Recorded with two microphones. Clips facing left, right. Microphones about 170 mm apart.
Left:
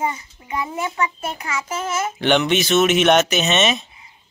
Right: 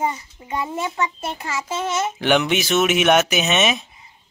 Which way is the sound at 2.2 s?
5° right (ahead or behind).